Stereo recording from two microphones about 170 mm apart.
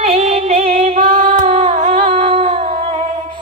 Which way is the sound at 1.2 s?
30° right (ahead or behind).